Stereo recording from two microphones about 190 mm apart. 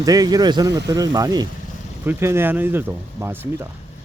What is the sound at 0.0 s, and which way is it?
Speech, 20° right (ahead or behind).